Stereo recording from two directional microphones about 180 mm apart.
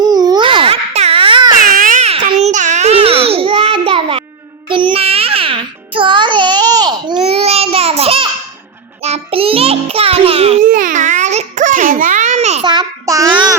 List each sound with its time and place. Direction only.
0.0 s baby cry: 20° right (ahead or behind)
1.6 s a sound: 50° right (ahead or behind); by 4.2 s 30° right (ahead or behind)
4.7 s music: 30° right (ahead or behind)
7.3 s a sound: 35° right (ahead or behind)
9.0 s music: 35° right (ahead or behind)
10.6 s baby cry: 50° right (ahead or behind)
12.6 s child singing: 25° right (ahead or behind)